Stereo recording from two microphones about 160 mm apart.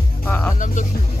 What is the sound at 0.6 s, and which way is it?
Music, 55° left (ahead or behind).